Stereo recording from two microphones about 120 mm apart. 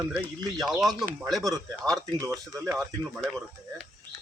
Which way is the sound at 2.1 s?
25° right (ahead or behind).